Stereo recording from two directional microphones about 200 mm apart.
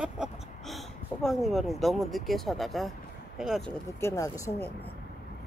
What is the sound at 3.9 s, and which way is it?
Speech, 15° left (ahead or behind).